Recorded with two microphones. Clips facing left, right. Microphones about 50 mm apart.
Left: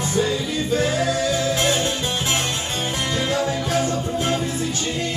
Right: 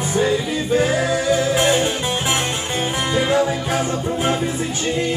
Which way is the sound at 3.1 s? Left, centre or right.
Right.